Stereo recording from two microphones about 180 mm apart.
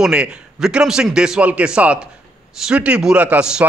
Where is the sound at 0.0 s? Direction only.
5° right (ahead or behind).